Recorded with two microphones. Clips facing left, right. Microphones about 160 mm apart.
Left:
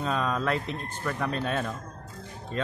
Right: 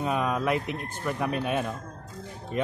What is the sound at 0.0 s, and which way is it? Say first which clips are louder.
A man's voice: right 1 dB; 15° right (ahead or behind).